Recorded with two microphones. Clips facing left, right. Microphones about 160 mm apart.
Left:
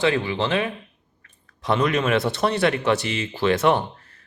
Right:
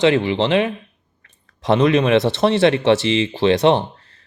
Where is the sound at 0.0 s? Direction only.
25° right (ahead or behind).